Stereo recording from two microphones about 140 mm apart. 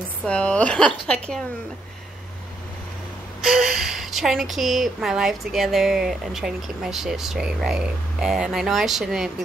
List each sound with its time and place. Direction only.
0.2 s a woman's voice: 10° left (ahead or behind)
3.4 s a woman's voice: centre (ahead or behind)